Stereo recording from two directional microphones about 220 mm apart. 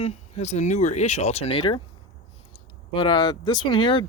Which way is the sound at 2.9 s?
20° left (ahead or behind).